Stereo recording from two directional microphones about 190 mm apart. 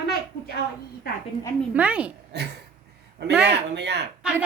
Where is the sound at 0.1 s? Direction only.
55° left (ahead or behind).